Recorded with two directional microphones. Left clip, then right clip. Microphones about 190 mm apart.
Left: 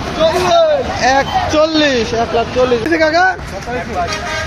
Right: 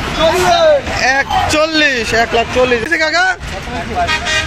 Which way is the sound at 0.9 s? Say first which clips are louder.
Even; 5° right (ahead or behind).